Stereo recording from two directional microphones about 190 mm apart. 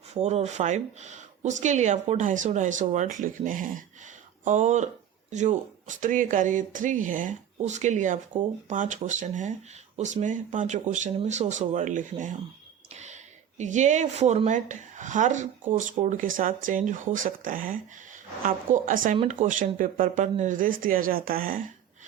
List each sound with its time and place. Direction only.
0.1 s speech: 35° right (ahead or behind)
13.6 s speech: 40° right (ahead or behind)